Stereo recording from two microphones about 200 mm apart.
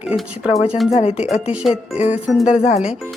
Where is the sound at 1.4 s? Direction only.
5° right (ahead or behind).